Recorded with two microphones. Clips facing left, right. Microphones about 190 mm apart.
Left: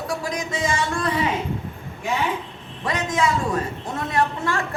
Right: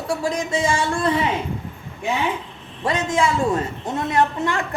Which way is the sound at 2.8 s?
30° right (ahead or behind).